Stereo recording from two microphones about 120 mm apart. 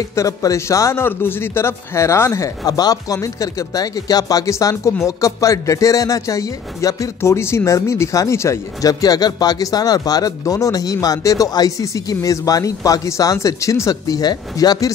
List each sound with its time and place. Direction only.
0.1 s a man's voice: 25° left (ahead or behind)